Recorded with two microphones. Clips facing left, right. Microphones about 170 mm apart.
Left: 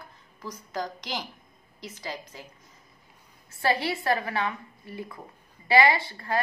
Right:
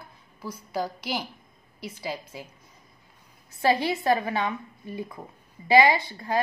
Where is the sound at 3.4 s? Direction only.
20° right (ahead or behind).